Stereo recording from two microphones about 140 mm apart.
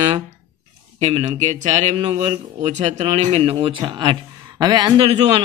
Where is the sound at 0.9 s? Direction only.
50° right (ahead or behind).